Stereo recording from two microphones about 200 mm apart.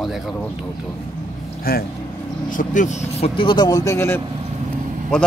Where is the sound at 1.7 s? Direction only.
50° left (ahead or behind).